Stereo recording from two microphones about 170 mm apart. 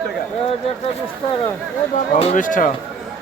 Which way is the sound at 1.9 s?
45° left (ahead or behind).